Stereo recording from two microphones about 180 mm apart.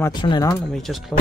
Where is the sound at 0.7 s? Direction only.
Centre (ahead or behind).